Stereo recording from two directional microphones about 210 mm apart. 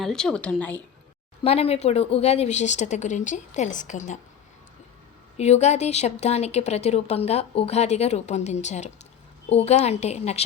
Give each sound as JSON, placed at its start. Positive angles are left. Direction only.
{"t": 0.0, "sound": "a woman's voice", "side_deg": 0}
{"t": 1.5, "sound": "speech", "side_deg": 30}
{"t": 5.4, "sound": "speech", "side_deg": 35}